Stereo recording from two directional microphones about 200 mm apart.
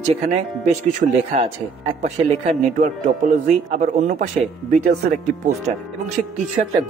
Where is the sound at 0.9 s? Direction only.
35° right (ahead or behind).